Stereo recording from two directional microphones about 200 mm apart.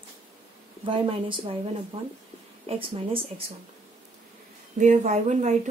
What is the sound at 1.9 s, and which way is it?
Speech, 25° right (ahead or behind).